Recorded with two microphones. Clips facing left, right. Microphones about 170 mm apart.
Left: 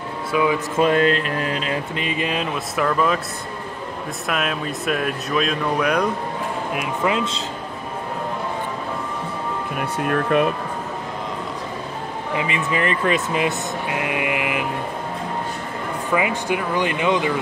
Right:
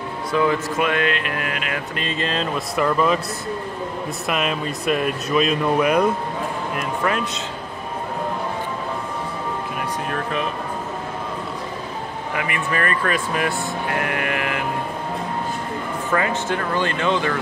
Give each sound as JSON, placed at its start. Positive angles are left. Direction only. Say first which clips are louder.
{"t": 0.3, "sound": "speech", "louder": "even", "side_deg": 10}
{"t": 0.7, "sound": "speech", "louder": "left 4 dB", "side_deg": 35}
{"t": 2.0, "sound": "speech", "louder": "left 1 dB", "side_deg": 15}
{"t": 2.7, "sound": "speech", "louder": "right 1 dB", "side_deg": 0}
{"t": 4.3, "sound": "speech", "louder": "right 1 dB", "side_deg": 0}
{"t": 7.0, "sound": "speech", "louder": "left 2 dB", "side_deg": 20}
{"t": 9.8, "sound": "speech", "louder": "left 8 dB", "side_deg": 55}
{"t": 12.4, "sound": "speech", "louder": "left 1 dB", "side_deg": 20}
{"t": 16.1, "sound": "speech", "louder": "left 1 dB", "side_deg": 10}